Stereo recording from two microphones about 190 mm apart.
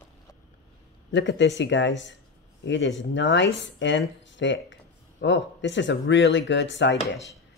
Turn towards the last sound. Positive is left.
turn(degrees=70)  # may be behind; listen again after turning